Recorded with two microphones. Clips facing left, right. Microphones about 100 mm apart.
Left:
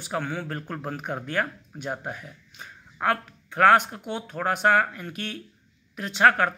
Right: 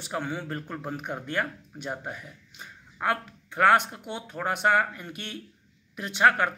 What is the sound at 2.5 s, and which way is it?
Speech, 5° right (ahead or behind).